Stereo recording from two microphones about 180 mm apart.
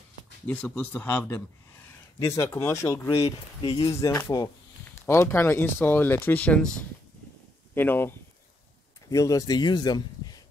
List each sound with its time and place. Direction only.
0.5 s speech: 10° left (ahead or behind)
3.2 s speech: 35° left (ahead or behind)
3.8 s speech: 20° left (ahead or behind)
9.1 s speech: 15° left (ahead or behind)